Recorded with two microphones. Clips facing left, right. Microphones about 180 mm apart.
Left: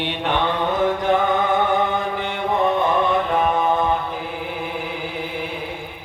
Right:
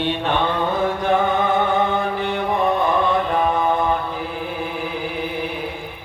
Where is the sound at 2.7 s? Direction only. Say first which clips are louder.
Even; 20° left (ahead or behind).